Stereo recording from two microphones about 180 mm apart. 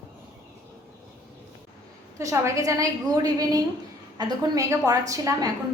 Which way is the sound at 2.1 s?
15° right (ahead or behind).